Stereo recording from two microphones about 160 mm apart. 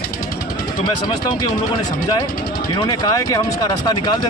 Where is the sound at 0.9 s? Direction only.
25° left (ahead or behind).